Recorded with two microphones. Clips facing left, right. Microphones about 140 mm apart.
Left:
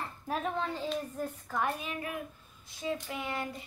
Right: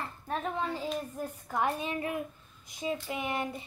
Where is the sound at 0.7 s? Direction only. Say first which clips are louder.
Even; 10° right (ahead or behind).